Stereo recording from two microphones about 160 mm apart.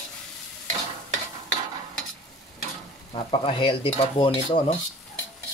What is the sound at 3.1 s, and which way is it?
Speech, 35° left (ahead or behind).